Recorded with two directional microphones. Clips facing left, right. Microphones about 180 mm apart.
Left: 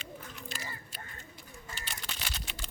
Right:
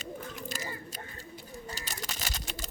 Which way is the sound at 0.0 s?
45° right (ahead or behind).